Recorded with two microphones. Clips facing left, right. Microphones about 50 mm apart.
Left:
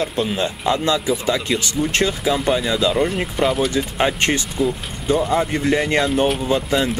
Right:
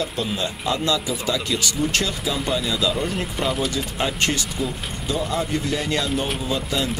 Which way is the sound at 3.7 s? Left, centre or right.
Left.